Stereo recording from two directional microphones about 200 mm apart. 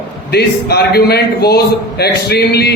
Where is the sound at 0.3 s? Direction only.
55° left (ahead or behind).